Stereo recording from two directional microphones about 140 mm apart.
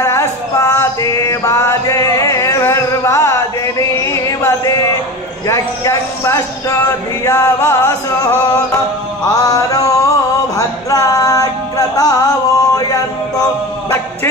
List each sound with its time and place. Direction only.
0.0 s music: 20° left (ahead or behind)
4.0 s a sound: 20° left (ahead or behind)
5.5 s music: 20° left (ahead or behind)